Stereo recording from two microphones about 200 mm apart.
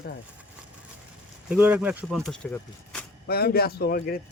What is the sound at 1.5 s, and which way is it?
Speech, 5° right (ahead or behind).